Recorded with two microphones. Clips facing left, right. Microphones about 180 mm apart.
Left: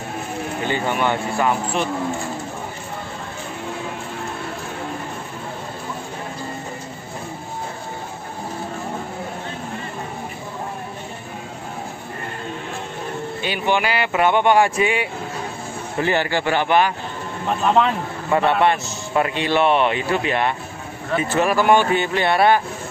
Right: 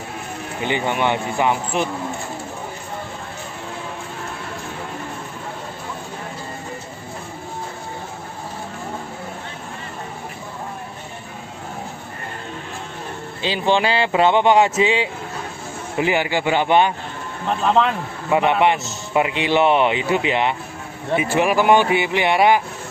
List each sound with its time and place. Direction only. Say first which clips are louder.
0.7 s speech: right 1 dB; 15° right (ahead or behind)
13.4 s speech: right 3 dB; 25° right (ahead or behind)
16.0 s speech: right 1 dB; 15° right (ahead or behind)
18.3 s speech: right 1 dB; 15° right (ahead or behind)